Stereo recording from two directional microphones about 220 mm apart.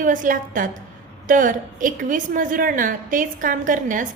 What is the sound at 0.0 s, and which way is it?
A woman's voice, 35° right (ahead or behind).